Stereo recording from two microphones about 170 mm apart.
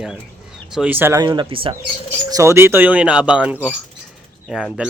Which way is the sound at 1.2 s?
25° right (ahead or behind).